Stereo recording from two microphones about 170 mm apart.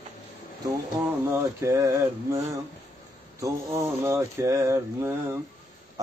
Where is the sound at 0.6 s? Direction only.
20° right (ahead or behind).